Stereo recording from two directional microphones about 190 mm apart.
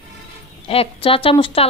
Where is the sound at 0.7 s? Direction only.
30° left (ahead or behind).